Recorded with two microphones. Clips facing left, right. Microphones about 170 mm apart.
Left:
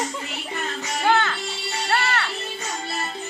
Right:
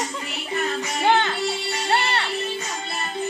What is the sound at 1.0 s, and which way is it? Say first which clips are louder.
Music: right 1 dB; 20° right (ahead or behind).